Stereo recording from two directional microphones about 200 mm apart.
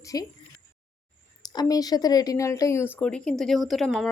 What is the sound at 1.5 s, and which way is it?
A woman's voice, 20° left (ahead or behind).